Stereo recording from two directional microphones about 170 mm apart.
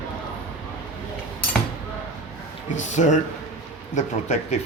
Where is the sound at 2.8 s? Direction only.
45° left (ahead or behind).